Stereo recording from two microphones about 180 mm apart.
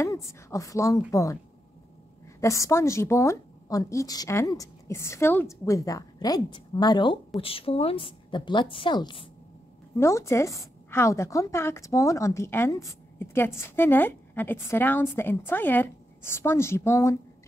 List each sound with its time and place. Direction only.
0.0 s a woman's voice: 15° left (ahead or behind)
2.4 s a woman's voice: 15° left (ahead or behind)
9.9 s a woman's voice: 15° left (ahead or behind)